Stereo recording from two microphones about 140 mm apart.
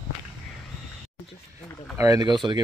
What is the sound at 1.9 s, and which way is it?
Speech, 25° right (ahead or behind).